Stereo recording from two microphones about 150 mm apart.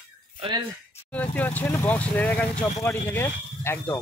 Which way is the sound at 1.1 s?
10° left (ahead or behind).